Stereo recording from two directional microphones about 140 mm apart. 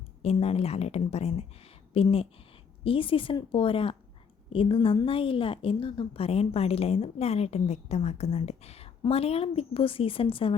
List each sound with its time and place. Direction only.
0.2 s a woman's voice: 45° left (ahead or behind)